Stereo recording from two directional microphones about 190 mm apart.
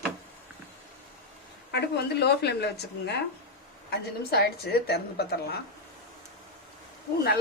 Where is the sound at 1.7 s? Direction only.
60° left (ahead or behind).